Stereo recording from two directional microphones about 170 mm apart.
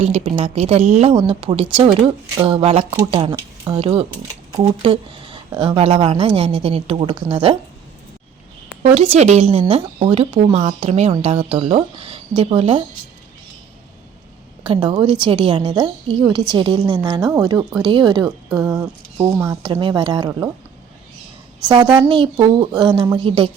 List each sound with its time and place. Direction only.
0.0 s a woman's voice: 35° right (ahead or behind)
9.0 s speech: 40° right (ahead or behind)
14.7 s a woman's voice: 30° right (ahead or behind)
18.4 s speech: centre (ahead or behind)
19.4 s a woman's voice: 20° right (ahead or behind)
21.7 s a woman's voice: 25° right (ahead or behind)